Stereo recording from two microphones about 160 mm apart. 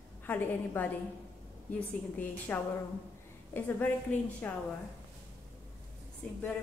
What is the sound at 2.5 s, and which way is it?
A woman's voice, 10° left (ahead or behind).